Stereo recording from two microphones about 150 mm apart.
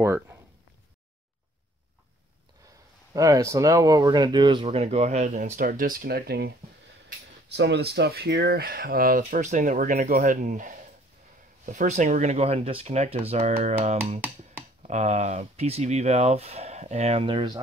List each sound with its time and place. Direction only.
0.0 s speech: 15° right (ahead or behind)
3.1 s speech: 20° right (ahead or behind)
4.6 s speech: 45° right (ahead or behind)